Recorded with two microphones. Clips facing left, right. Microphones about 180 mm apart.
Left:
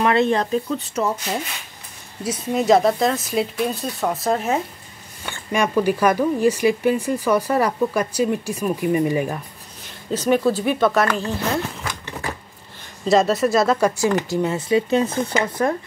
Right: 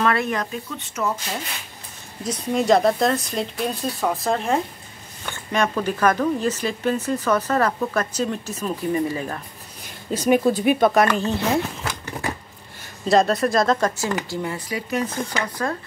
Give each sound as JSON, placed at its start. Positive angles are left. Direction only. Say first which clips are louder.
{"t": 0.0, "sound": "speech", "louder": "left 4 dB", "side_deg": 25}
{"t": 2.2, "sound": "speech", "louder": "left 1 dB", "side_deg": 5}
{"t": 10.1, "sound": "speech", "louder": "even", "side_deg": -10}
{"t": 13.0, "sound": "speech", "louder": "left 1 dB", "side_deg": 0}